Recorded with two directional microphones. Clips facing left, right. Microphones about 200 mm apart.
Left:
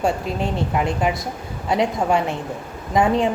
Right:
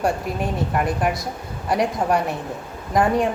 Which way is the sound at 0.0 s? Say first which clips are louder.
Left 1 dB; centre (ahead or behind).